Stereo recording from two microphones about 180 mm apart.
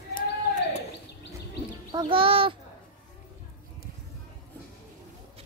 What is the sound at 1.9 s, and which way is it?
Child singing, 25° right (ahead or behind).